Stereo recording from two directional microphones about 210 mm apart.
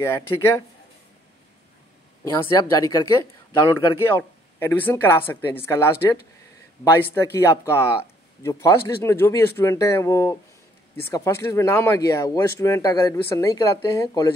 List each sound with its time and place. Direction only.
0.0 s speech: 15° left (ahead or behind)
2.4 s speech: 15° left (ahead or behind)
7.4 s speech: 10° left (ahead or behind)